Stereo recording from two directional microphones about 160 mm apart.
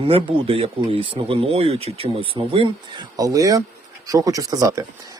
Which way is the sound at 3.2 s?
20° right (ahead or behind).